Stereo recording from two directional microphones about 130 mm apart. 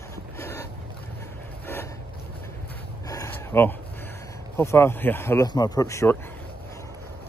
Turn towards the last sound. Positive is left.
turn(degrees=25)  # may be behind; listen again after turning